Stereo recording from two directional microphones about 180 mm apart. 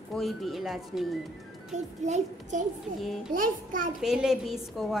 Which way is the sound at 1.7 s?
40° right (ahead or behind).